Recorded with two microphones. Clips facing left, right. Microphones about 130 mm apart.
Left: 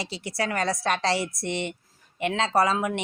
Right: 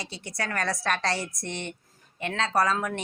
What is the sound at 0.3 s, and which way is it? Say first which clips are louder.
Speech: left 3 dB; 25° left (ahead or behind).